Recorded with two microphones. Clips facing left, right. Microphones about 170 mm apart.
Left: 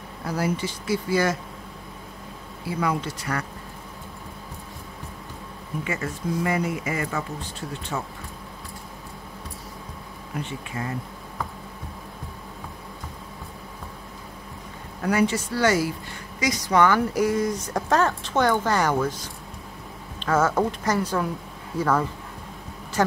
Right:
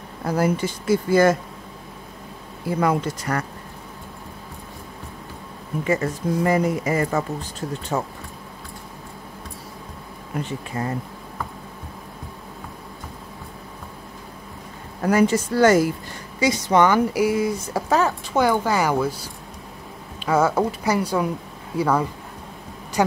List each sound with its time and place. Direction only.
0.3 s speech: 50° right (ahead or behind)
2.6 s speech: 50° right (ahead or behind)
5.9 s speech: 40° right (ahead or behind)
10.4 s speech: 40° right (ahead or behind)
15.0 s speech: 45° right (ahead or behind)
16.3 s a woman's voice: 25° right (ahead or behind)